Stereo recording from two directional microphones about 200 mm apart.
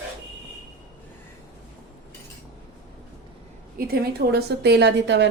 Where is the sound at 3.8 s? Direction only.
50° right (ahead or behind).